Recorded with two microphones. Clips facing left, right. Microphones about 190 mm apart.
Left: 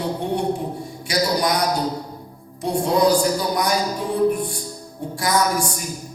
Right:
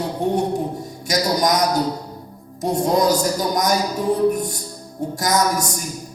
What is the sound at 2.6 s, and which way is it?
Speech, 40° right (ahead or behind).